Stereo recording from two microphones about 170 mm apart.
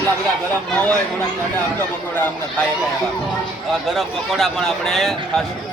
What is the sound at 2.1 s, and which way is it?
Speech, 10° left (ahead or behind).